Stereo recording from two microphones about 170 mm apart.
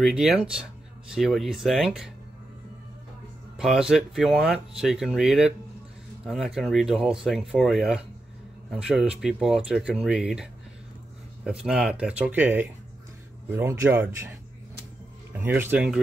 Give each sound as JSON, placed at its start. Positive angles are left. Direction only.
{"t": 0.0, "sound": "speech", "side_deg": 0}
{"t": 3.5, "sound": "speech", "side_deg": -5}
{"t": 15.3, "sound": "speech", "side_deg": -10}